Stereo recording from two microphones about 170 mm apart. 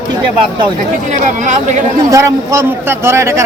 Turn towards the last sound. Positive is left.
turn(degrees=-15)  # may be behind; listen again after turning